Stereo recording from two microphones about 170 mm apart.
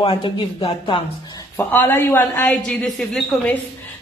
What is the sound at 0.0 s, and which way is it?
Speech, 30° left (ahead or behind).